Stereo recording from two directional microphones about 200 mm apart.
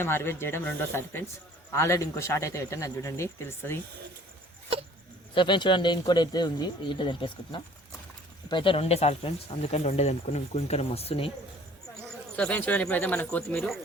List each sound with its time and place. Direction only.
0.0 s a man's voice: 10° left (ahead or behind)
5.3 s speech: 25° left (ahead or behind)
12.4 s a man's voice: 5° left (ahead or behind)